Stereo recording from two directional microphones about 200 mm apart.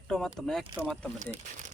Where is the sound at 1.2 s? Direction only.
40° right (ahead or behind).